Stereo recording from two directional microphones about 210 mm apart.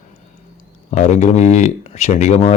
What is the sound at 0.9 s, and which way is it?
Speech, 35° left (ahead or behind).